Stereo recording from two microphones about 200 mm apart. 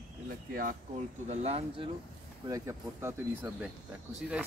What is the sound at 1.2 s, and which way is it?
Speech, 30° right (ahead or behind).